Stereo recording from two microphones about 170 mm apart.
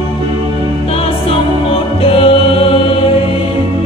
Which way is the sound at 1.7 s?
35° left (ahead or behind).